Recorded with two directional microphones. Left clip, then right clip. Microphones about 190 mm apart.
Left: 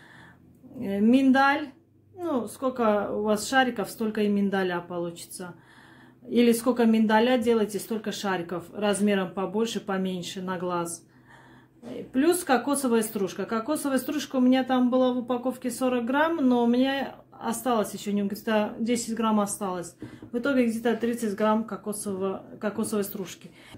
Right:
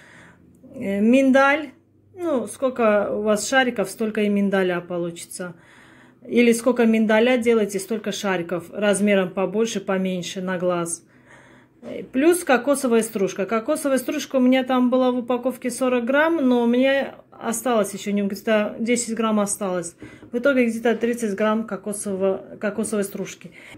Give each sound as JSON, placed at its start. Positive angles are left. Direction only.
{"t": 0.7, "sound": "speech", "side_deg": -10}
{"t": 11.9, "sound": "speech", "side_deg": -10}